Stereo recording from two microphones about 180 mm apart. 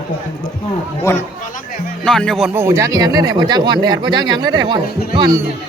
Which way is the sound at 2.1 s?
5° left (ahead or behind).